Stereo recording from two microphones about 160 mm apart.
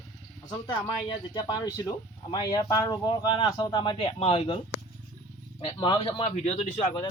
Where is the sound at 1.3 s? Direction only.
25° left (ahead or behind).